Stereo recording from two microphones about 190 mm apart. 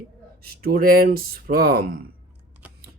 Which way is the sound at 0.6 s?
50° right (ahead or behind).